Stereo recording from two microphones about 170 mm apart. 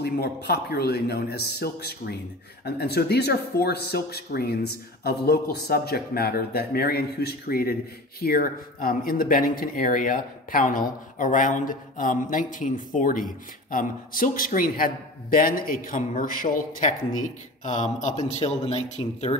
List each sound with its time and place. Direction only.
0.0 s speech: 70° left (ahead or behind); by 19.3 s 40° left (ahead or behind)